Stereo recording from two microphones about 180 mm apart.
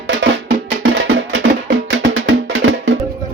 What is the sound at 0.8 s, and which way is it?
Music, 70° right (ahead or behind).